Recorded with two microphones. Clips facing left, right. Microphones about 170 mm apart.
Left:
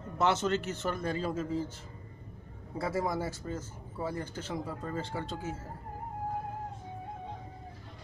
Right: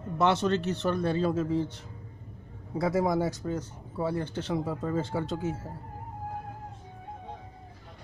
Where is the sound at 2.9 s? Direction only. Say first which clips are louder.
Right 6 dB; 20° right (ahead or behind).